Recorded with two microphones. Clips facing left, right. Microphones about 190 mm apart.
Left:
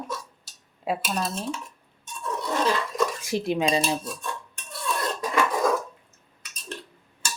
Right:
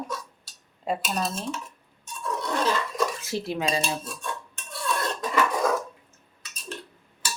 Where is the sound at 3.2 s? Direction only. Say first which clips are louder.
Left 4 dB; 15° left (ahead or behind).